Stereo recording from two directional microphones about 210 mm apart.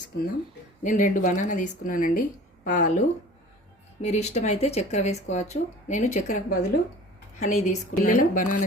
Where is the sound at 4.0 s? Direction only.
30° left (ahead or behind).